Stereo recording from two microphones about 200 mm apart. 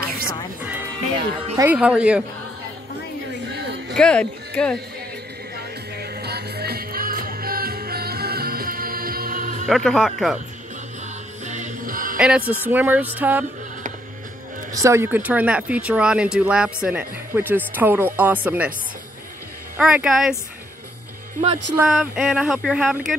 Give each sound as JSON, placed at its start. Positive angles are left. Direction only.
{"t": 0.6, "sound": "music", "side_deg": -10}
{"t": 1.6, "sound": "speech", "side_deg": -5}
{"t": 3.9, "sound": "speech", "side_deg": 5}
{"t": 6.2, "sound": "music", "side_deg": -55}
{"t": 9.7, "sound": "speech", "side_deg": 0}
{"t": 11.4, "sound": "music", "side_deg": -35}
{"t": 12.2, "sound": "speech", "side_deg": -5}
{"t": 14.7, "sound": "speech", "side_deg": -15}
{"t": 19.8, "sound": "speech", "side_deg": -5}
{"t": 21.8, "sound": "speech", "side_deg": 0}